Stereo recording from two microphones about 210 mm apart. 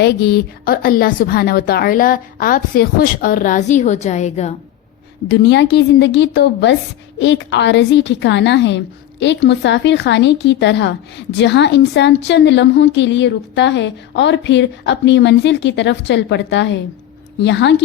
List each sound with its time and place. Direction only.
0.0 s a woman's voice: 50° left (ahead or behind); by 4.5 s 35° left (ahead or behind)
5.3 s a woman's voice: 55° left (ahead or behind)